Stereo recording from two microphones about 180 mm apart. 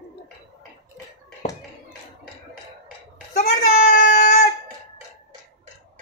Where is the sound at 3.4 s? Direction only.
50° left (ahead or behind).